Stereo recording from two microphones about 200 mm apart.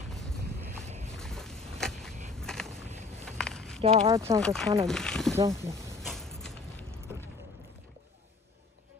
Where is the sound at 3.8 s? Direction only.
30° right (ahead or behind).